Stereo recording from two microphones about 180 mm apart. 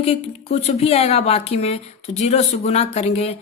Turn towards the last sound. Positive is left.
turn(degrees=35)  # may be behind; listen again after turning